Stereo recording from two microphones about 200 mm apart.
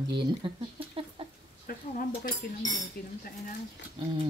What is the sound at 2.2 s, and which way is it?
Speech, 20° left (ahead or behind).